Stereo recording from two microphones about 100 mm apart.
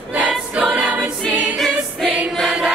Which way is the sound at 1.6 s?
Centre (ahead or behind).